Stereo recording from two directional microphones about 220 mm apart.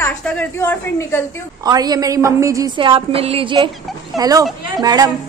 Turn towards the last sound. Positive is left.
turn(degrees=-15)  # may be behind; listen again after turning